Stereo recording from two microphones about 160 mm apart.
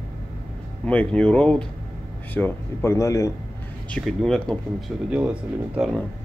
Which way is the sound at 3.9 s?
Centre (ahead or behind).